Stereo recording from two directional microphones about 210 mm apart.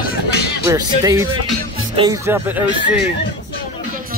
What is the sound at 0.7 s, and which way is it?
Speech, 15° right (ahead or behind).